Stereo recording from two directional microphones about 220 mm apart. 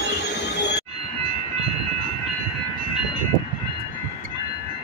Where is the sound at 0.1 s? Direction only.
50° left (ahead or behind).